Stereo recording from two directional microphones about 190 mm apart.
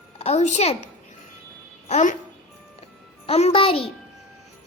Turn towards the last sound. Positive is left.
turn(degrees=30)  # may be behind; listen again after turning